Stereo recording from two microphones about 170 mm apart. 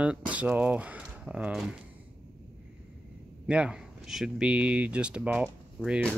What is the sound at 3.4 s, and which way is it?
Speech, 5° right (ahead or behind).